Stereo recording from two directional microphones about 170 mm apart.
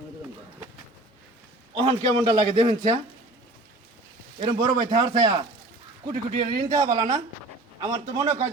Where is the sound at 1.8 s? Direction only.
25° right (ahead or behind).